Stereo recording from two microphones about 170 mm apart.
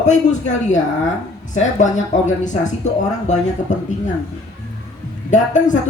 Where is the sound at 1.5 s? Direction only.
45° left (ahead or behind).